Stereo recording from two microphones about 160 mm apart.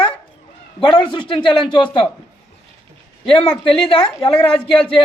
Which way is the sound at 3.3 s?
30° left (ahead or behind).